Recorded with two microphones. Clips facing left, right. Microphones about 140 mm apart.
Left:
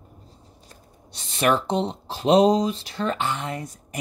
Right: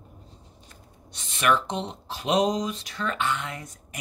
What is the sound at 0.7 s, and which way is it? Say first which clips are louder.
Speech: left 1 dB; 35° left (ahead or behind).